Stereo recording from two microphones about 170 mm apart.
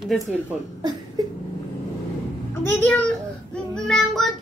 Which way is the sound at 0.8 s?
25° right (ahead or behind).